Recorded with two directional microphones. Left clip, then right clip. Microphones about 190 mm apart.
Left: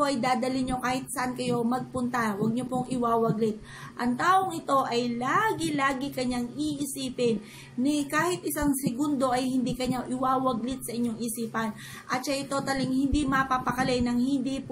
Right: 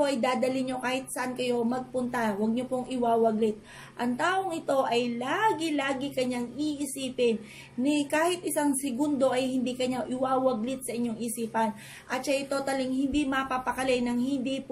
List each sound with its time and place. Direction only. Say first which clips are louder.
0.0 s a woman's voice: even; 5° left (ahead or behind)